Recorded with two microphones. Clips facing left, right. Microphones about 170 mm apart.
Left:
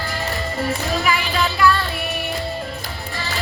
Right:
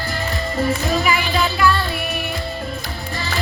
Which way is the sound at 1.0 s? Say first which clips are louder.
Right 1 dB; centre (ahead or behind).